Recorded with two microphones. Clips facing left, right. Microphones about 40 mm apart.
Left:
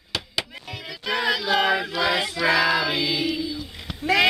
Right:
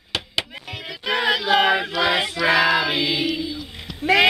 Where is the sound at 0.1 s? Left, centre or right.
Right.